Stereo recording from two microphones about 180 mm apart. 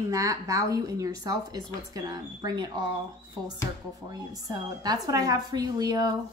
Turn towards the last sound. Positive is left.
turn(degrees=-20)  # may be behind; listen again after turning